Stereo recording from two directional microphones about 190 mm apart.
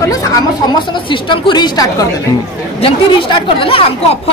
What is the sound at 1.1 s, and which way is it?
A woman's voice, 25° left (ahead or behind).